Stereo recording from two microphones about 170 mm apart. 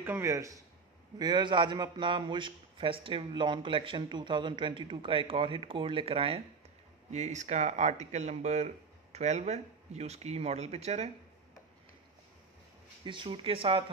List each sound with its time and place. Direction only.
0.0 s a man's voice: 15° right (ahead or behind); by 11.1 s 40° right (ahead or behind)
13.0 s a man's voice: 30° right (ahead or behind)